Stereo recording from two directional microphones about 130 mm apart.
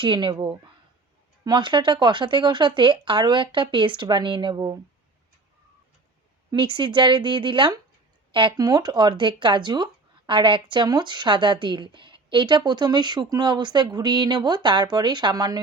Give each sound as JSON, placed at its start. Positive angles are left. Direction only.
{"t": 0.0, "sound": "speech", "side_deg": -35}
{"t": 6.5, "sound": "speech", "side_deg": -40}